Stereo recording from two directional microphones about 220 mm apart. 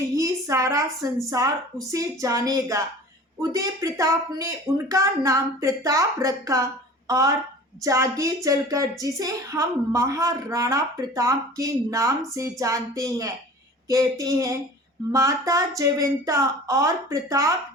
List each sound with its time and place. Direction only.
0.2 s a woman's voice: 15° right (ahead or behind)
7.8 s speech: 15° right (ahead or behind)